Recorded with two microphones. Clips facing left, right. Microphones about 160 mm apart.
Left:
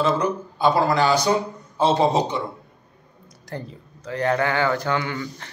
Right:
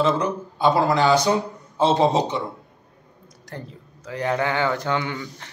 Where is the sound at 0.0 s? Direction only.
20° right (ahead or behind).